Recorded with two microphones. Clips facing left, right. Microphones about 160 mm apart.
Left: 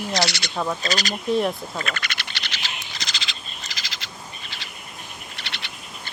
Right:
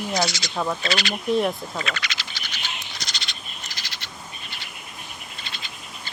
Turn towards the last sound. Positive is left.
turn(degrees=75)  # may be behind; listen again after turning